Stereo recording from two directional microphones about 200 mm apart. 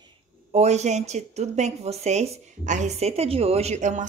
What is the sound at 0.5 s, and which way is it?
Speech, 35° right (ahead or behind).